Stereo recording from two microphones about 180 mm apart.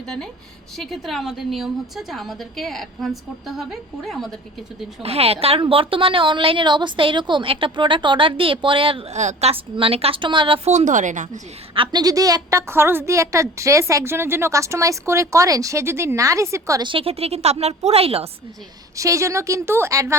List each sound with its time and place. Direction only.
0.0 s a woman's voice: 5° left (ahead or behind)
5.0 s a woman's voice: 35° right (ahead or behind)
11.7 s a woman's voice: 25° right (ahead or behind)
18.9 s a woman's voice: 15° right (ahead or behind)